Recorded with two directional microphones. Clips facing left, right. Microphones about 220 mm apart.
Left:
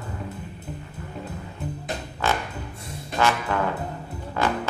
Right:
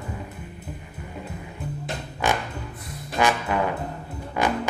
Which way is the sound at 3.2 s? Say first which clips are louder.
Right 1 dB; 15° right (ahead or behind).